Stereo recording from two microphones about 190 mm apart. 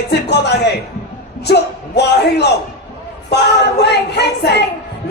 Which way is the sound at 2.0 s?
60° left (ahead or behind).